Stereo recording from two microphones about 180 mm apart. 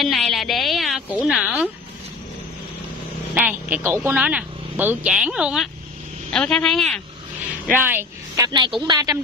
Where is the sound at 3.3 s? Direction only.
10° right (ahead or behind).